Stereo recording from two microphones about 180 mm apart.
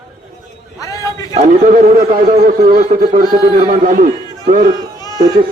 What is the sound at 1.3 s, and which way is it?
A man's voice, 45° right (ahead or behind).